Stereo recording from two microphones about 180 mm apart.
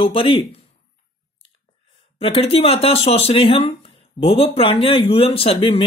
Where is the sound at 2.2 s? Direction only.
30° left (ahead or behind).